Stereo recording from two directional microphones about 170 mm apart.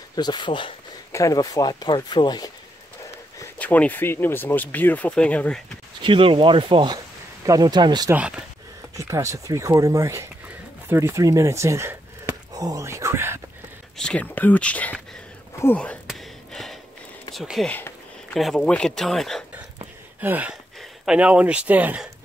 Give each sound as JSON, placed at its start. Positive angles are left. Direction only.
{"t": 0.1, "sound": "speech", "side_deg": 25}
{"t": 3.5, "sound": "speech", "side_deg": 10}
{"t": 6.0, "sound": "speech", "side_deg": -30}
{"t": 8.1, "sound": "speech", "side_deg": -5}
{"t": 8.9, "sound": "speech", "side_deg": -20}
{"t": 13.9, "sound": "speech", "side_deg": 5}
{"t": 15.6, "sound": "a sound", "side_deg": 10}
{"t": 17.3, "sound": "speech", "side_deg": 0}
{"t": 17.7, "sound": "a sound", "side_deg": 10}
{"t": 18.4, "sound": "speech", "side_deg": 5}
{"t": 20.2, "sound": "speech", "side_deg": -10}